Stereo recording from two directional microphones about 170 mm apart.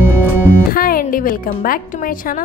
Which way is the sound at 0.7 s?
60° left (ahead or behind).